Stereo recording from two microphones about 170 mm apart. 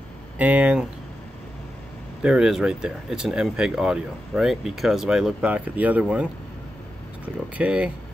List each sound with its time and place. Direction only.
0.4 s speech: 10° right (ahead or behind)
2.2 s speech: 5° right (ahead or behind)
7.5 s speech: 5° right (ahead or behind)